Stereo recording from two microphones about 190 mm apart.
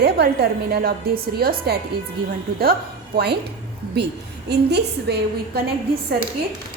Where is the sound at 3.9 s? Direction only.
60° right (ahead or behind).